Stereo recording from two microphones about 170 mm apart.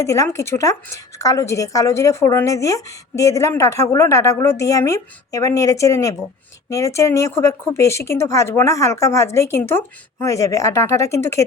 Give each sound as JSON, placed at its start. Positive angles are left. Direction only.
{"t": 0.0, "sound": "speech", "side_deg": 20}